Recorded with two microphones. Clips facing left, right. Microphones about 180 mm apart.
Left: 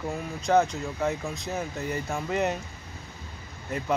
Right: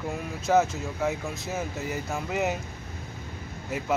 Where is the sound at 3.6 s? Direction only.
5° right (ahead or behind).